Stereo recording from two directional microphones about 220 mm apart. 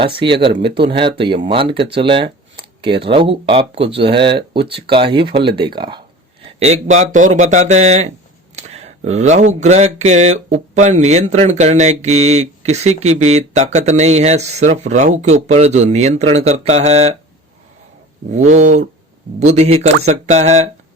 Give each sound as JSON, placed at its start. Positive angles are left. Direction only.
{"t": 0.0, "sound": "speech", "side_deg": -25}
{"t": 2.0, "sound": "a sound", "side_deg": -20}
{"t": 3.0, "sound": "speech", "side_deg": -25}
{"t": 6.6, "sound": "speech", "side_deg": -30}
{"t": 18.3, "sound": "speech", "side_deg": -30}